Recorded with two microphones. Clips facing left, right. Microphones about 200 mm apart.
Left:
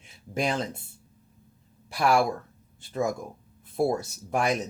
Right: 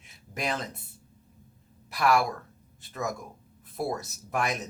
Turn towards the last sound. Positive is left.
turn(degrees=30)  # may be behind; listen again after turning